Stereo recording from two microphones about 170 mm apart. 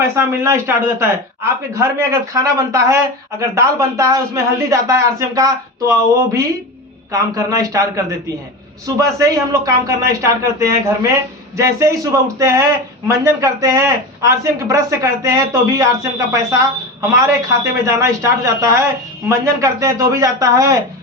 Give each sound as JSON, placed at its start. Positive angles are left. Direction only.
{"t": 0.0, "sound": "a man's voice", "side_deg": -15}